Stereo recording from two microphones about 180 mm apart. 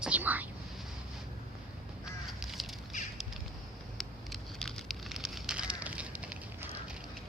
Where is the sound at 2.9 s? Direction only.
40° left (ahead or behind).